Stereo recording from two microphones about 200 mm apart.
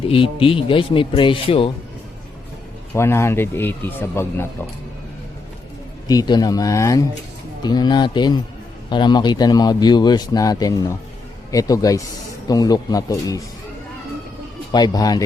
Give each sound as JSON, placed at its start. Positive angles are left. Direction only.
{"t": 0.1, "sound": "a man's voice", "side_deg": 25}
{"t": 2.9, "sound": "speech", "side_deg": 15}
{"t": 6.1, "sound": "a man's voice", "side_deg": 20}
{"t": 14.7, "sound": "a man's voice", "side_deg": 20}